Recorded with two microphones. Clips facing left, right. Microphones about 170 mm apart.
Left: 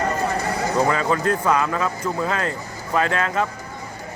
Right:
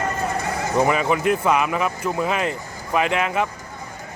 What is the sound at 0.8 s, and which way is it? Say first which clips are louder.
Speech: right 2 dB; 15° right (ahead or behind).